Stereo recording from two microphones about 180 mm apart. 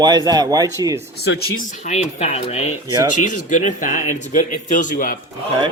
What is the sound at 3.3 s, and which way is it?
Speech, 45° left (ahead or behind).